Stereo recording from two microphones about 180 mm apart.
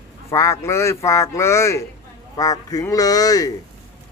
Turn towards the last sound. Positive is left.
turn(degrees=20)  # may be behind; listen again after turning